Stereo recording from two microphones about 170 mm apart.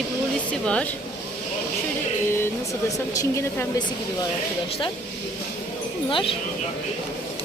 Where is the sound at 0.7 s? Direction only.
5° left (ahead or behind).